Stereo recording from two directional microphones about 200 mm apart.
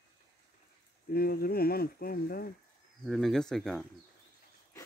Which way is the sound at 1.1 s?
50° left (ahead or behind).